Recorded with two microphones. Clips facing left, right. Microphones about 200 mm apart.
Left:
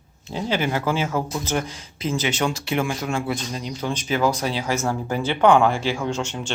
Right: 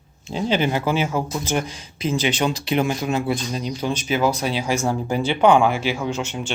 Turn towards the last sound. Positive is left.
turn(degrees=-5)  # may be behind; listen again after turning